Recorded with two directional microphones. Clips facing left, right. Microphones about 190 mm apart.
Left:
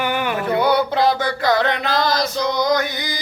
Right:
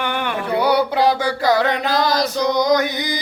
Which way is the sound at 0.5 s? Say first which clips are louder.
Right 1 dB; 10° right (ahead or behind).